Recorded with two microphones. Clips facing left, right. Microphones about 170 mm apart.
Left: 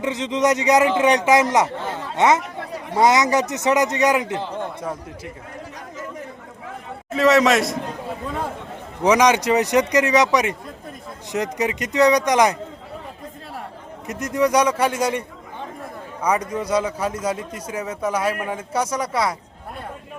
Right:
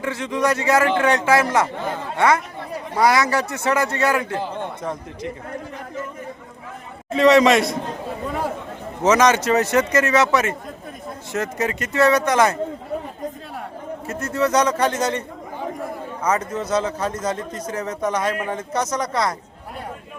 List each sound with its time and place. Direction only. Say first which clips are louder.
0.0 s speech: left 2 dB; 20° left (ahead or behind)
4.8 s speech: right 1 dB; 5° left (ahead or behind)
7.1 s a man's voice: right 2 dB; centre (ahead or behind)
9.0 s speech: even; 15° left (ahead or behind)
14.1 s speech: left 1 dB; 15° left (ahead or behind)
16.2 s speech: left 1 dB; 15° left (ahead or behind)